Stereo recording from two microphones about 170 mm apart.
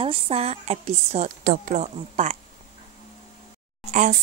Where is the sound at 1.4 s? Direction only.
65° right (ahead or behind).